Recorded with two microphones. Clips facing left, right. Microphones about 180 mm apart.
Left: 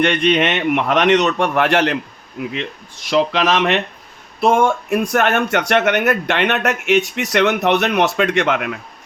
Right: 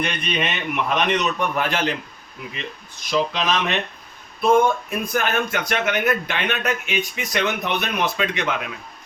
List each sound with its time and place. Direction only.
0.0 s speech: 85° left
3.1 s speech: 80° left